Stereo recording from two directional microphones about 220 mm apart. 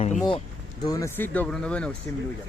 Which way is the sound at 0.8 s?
15° left (ahead or behind).